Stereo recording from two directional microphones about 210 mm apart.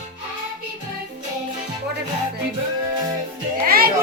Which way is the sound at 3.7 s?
45° right (ahead or behind).